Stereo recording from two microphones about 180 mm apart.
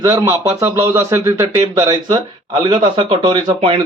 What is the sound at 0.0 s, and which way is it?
Speech, 15° right (ahead or behind).